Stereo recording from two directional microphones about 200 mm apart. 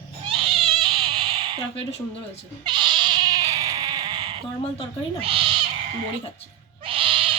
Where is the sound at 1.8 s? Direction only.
30° left (ahead or behind).